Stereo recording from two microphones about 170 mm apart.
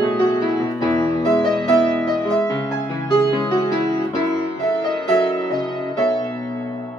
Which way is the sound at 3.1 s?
25° left (ahead or behind).